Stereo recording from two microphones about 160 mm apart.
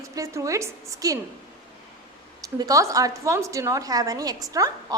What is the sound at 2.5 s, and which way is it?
A woman's voice, 20° right (ahead or behind).